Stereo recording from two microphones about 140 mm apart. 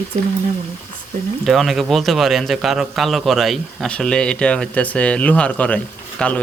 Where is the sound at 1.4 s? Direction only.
Centre (ahead or behind).